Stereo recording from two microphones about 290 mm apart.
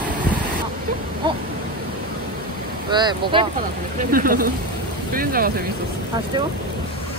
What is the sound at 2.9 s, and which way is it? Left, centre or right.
Boat, centre.